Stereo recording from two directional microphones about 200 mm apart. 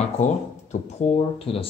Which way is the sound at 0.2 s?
35° left (ahead or behind).